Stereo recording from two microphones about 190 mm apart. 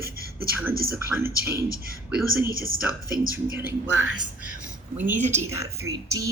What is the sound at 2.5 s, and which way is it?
Speech, 50° right (ahead or behind).